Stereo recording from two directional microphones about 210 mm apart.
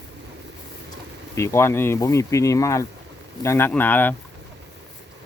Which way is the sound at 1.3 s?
15° left (ahead or behind).